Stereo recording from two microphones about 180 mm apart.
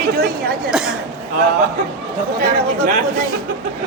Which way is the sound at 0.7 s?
5° right (ahead or behind).